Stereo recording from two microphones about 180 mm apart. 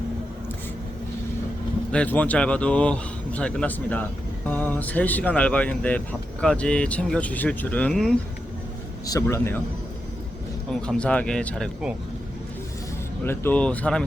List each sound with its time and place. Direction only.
1.9 s speech: 5° left (ahead or behind)
9.0 s speech: 20° left (ahead or behind)
10.7 s speech: 5° left (ahead or behind)
13.2 s speech: 15° left (ahead or behind)